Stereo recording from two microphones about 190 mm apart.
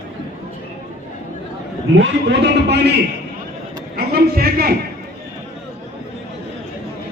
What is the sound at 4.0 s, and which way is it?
Speech, 55° right (ahead or behind).